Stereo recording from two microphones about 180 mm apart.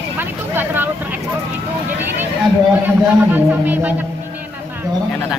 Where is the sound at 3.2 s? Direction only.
10° right (ahead or behind).